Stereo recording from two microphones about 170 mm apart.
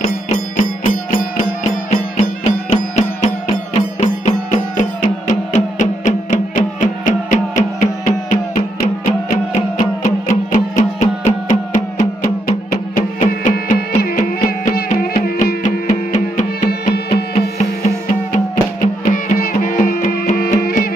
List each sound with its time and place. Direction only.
0.3 s music: 50° left (ahead or behind)
15.2 s music: 60° left (ahead or behind)
16.6 s music: 65° left (ahead or behind)
17.6 s music: 45° left (ahead or behind)